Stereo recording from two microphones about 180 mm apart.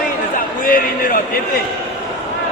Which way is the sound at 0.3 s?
50° left (ahead or behind).